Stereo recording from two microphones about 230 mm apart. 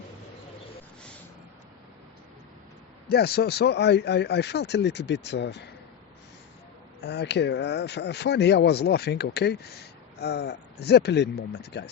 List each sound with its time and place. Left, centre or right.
3.1 s speech: left
7.0 s speech: left